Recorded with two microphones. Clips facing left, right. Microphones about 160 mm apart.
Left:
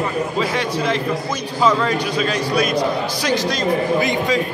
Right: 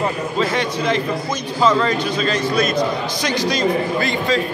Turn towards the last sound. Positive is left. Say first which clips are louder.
# left 1 dB
turn(degrees=15)  # may be behind; listen again after turning